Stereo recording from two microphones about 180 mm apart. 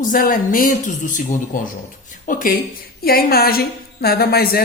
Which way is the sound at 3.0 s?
60° left (ahead or behind).